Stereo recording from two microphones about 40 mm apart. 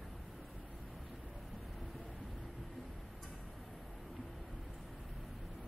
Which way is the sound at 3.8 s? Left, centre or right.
Centre.